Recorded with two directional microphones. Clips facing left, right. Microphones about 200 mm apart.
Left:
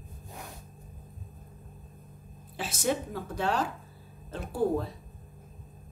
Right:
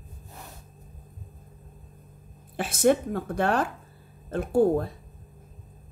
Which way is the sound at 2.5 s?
55° right (ahead or behind).